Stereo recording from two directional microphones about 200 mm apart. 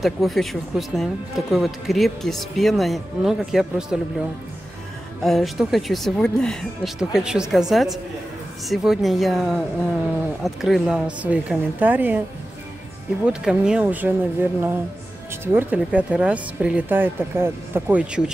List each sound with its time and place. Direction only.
0.0 s speech: centre (ahead or behind)
5.2 s speech: centre (ahead or behind)
13.2 s speech: 5° right (ahead or behind)